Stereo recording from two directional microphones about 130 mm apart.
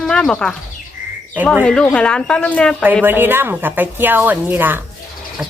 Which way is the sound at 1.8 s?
10° left (ahead or behind).